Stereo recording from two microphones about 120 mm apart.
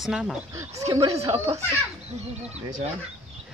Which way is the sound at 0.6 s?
25° right (ahead or behind).